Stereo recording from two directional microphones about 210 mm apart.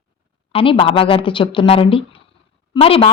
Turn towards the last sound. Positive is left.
turn(degrees=25)  # may be behind; listen again after turning